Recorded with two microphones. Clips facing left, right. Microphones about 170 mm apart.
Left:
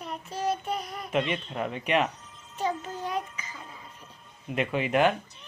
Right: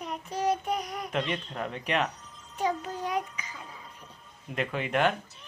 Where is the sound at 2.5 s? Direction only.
10° right (ahead or behind).